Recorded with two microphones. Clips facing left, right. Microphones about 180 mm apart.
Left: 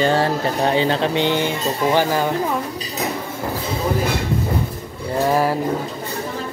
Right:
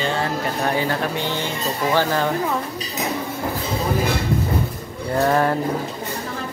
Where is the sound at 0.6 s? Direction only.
25° left (ahead or behind).